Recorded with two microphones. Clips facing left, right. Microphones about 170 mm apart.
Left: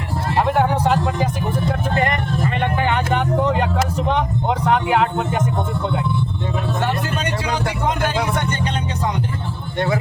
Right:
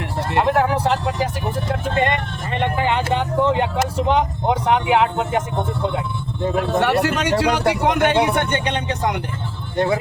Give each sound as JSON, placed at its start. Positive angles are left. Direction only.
{"t": 1.6, "sound": "vehicle", "side_deg": -25}
{"t": 6.6, "sound": "vehicle", "side_deg": -70}
{"t": 7.7, "sound": "a sound", "side_deg": -70}
{"t": 8.4, "sound": "vehicle", "side_deg": -65}
{"t": 9.7, "sound": "speech", "side_deg": -30}